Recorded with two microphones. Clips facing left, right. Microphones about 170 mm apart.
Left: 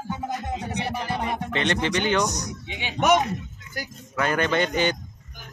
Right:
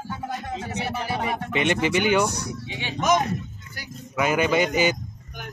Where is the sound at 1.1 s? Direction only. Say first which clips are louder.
Right 1 dB; 10° right (ahead or behind).